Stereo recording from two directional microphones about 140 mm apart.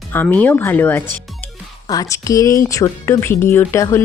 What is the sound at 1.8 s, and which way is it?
Speech, 25° left (ahead or behind).